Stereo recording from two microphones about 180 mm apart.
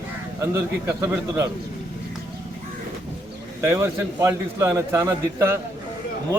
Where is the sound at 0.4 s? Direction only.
15° right (ahead or behind).